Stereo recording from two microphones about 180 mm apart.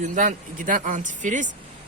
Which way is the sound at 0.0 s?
45° right (ahead or behind).